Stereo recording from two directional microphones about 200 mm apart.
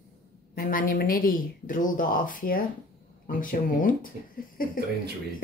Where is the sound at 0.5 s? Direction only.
45° left (ahead or behind).